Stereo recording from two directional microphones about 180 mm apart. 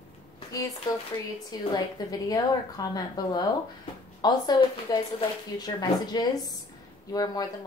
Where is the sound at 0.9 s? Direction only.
20° left (ahead or behind).